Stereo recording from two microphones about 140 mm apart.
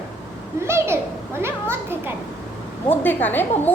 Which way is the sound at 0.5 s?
20° right (ahead or behind).